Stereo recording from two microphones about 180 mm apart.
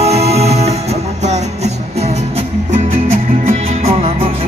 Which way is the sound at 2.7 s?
30° right (ahead or behind).